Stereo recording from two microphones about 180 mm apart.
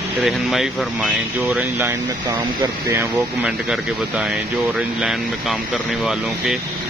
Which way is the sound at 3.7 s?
5° right (ahead or behind).